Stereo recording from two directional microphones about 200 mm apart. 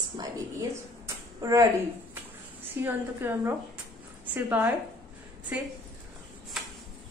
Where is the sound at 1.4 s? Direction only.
15° right (ahead or behind).